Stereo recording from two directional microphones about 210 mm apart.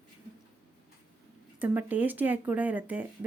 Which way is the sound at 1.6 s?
10° right (ahead or behind).